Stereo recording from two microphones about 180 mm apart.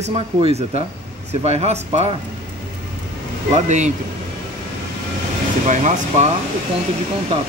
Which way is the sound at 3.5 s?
40° right (ahead or behind).